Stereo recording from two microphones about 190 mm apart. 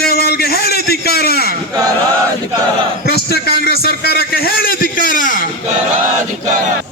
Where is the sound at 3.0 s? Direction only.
55° left (ahead or behind).